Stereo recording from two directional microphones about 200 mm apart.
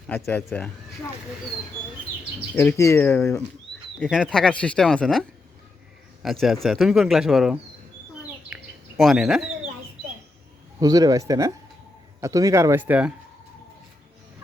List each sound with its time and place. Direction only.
0.1 s speech: 10° left (ahead or behind)
2.6 s speech: 15° left (ahead or behind)
6.2 s speech: centre (ahead or behind)
8.4 s bird: 5° right (ahead or behind)
10.8 s speech: 20° right (ahead or behind)